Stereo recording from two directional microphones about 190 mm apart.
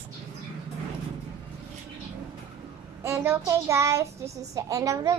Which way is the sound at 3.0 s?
15° right (ahead or behind).